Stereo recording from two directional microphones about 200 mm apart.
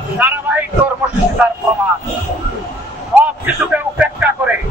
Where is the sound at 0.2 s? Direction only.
10° right (ahead or behind).